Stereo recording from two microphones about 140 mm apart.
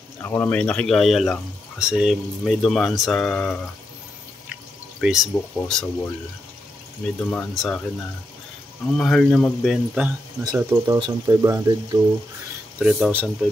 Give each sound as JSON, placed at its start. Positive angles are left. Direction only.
{"t": 0.2, "sound": "speech", "side_deg": 15}
{"t": 5.0, "sound": "speech", "side_deg": -5}
{"t": 7.2, "sound": "speech", "side_deg": 5}
{"t": 8.9, "sound": "speech", "side_deg": 5}
{"t": 9.7, "sound": "speech", "side_deg": -5}
{"t": 10.4, "sound": "speech", "side_deg": -25}
{"t": 12.7, "sound": "speech", "side_deg": -5}